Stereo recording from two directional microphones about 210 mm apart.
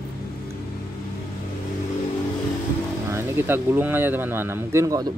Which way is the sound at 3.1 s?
10° right (ahead or behind).